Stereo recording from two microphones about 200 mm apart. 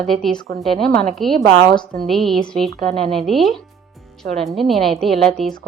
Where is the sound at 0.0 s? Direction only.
Centre (ahead or behind).